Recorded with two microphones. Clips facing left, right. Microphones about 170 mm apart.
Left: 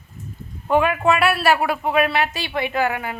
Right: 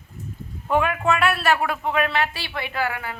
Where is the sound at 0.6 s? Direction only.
5° left (ahead or behind); by 3.1 s 20° left (ahead or behind).